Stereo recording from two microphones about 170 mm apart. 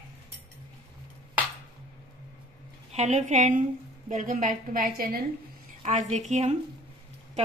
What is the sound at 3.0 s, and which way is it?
A woman's voice, 40° right (ahead or behind).